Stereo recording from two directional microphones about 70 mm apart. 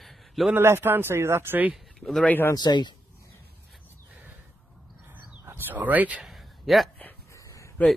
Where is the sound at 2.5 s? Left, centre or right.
Left.